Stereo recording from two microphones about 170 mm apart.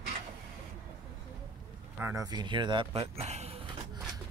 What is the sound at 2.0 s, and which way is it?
Speech, 20° right (ahead or behind).